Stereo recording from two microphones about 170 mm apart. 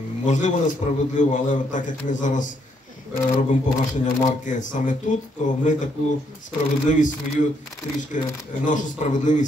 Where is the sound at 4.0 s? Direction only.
45° left (ahead or behind).